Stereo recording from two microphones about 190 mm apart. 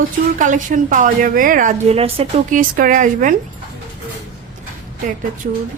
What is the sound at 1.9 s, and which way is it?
Speech, 30° right (ahead or behind).